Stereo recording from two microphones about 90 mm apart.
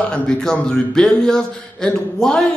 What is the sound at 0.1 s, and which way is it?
Speech, 10° left (ahead or behind).